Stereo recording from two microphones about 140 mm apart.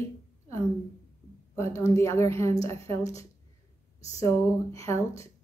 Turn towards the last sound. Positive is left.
turn(degrees=20)  # may be behind; listen again after turning